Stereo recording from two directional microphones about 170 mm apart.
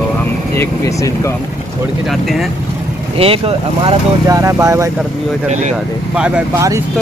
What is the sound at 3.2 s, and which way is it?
Speech, 35° right (ahead or behind).